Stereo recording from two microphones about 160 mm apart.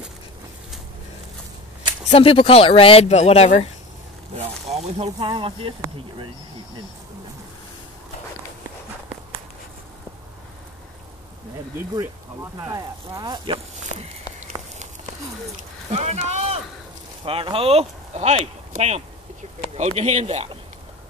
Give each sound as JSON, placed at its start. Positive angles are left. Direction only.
{"t": 2.0, "sound": "speech", "side_deg": 35}
{"t": 4.4, "sound": "speech", "side_deg": -45}
{"t": 5.2, "sound": "speech", "side_deg": -35}
{"t": 11.7, "sound": "speech", "side_deg": -15}
{"t": 14.4, "sound": "a sound", "side_deg": -50}
{"t": 15.9, "sound": "speech", "side_deg": -45}